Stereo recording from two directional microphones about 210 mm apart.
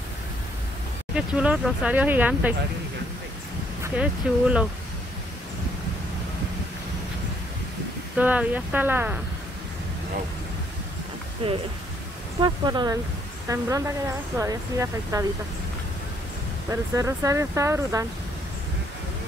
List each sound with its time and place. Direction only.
1.1 s speech: 5° right (ahead or behind)
3.8 s speech: 5° right (ahead or behind)
8.2 s speech: 5° right (ahead or behind)
11.4 s speech: 25° right (ahead or behind)
16.9 s speech: 15° right (ahead or behind)